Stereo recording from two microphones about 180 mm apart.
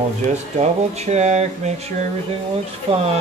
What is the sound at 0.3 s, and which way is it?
Speech, 40° right (ahead or behind).